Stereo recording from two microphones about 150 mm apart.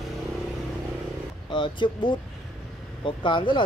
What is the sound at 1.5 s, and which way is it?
Speech, 30° left (ahead or behind).